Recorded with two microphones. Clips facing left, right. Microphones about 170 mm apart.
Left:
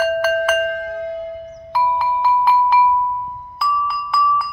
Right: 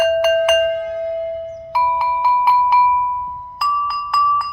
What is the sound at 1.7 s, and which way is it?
Music, 10° right (ahead or behind).